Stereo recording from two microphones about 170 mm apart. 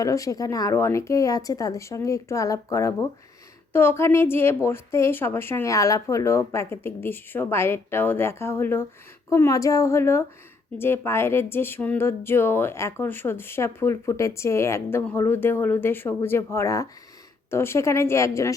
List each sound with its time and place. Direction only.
0.0 s speech: 20° left (ahead or behind)